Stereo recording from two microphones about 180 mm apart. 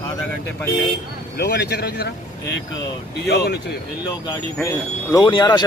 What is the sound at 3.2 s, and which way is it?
Speech, 65° left (ahead or behind).